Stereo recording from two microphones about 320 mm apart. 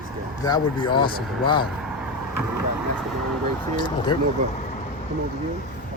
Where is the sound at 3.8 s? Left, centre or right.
Centre.